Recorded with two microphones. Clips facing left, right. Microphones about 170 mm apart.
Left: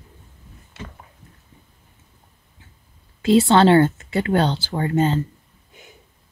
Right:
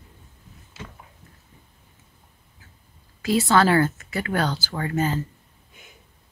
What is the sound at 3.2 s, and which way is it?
Speech, 25° left (ahead or behind).